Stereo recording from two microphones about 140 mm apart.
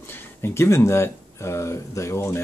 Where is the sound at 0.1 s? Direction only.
15° left (ahead or behind).